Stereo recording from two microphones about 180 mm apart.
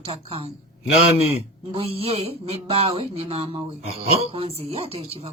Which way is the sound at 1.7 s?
30° right (ahead or behind).